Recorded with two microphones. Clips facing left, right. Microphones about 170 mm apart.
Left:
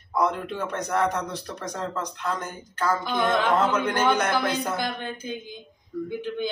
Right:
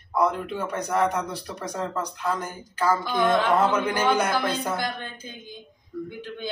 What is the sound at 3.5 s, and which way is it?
Speech, 10° right (ahead or behind).